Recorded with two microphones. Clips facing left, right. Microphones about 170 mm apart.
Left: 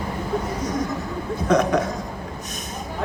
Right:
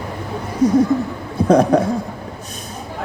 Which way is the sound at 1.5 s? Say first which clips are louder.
Right 6 dB; 30° right (ahead or behind).